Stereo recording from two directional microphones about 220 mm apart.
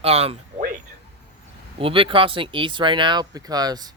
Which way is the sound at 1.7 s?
25° right (ahead or behind).